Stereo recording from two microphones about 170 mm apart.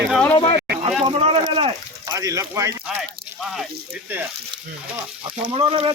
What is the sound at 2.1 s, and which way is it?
Speech, 20° right (ahead or behind).